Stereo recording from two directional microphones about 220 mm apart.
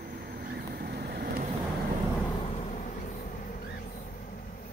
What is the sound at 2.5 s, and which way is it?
Vehicle, 30° left (ahead or behind).